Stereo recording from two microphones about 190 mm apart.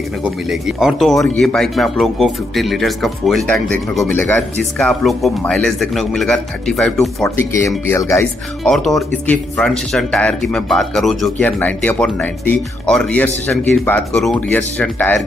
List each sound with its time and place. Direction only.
0.2 s speech: 5° right (ahead or behind)
7.2 s speech: 15° left (ahead or behind)
8.6 s speech: centre (ahead or behind)